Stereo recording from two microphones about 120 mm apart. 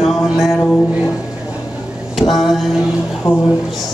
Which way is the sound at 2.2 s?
Centre (ahead or behind).